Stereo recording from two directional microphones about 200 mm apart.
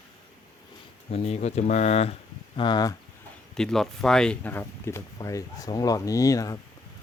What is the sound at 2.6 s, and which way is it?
Speech, 20° left (ahead or behind).